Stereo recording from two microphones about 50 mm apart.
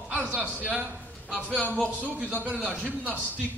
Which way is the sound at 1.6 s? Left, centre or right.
Left.